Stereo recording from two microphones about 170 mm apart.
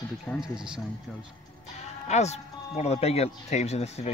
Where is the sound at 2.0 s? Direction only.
40° left (ahead or behind).